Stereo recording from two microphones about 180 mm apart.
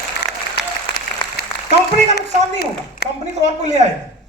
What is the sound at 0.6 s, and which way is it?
Applause, 60° left (ahead or behind).